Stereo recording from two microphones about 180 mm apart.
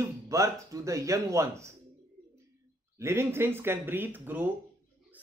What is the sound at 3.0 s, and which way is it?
A man's voice, 15° right (ahead or behind).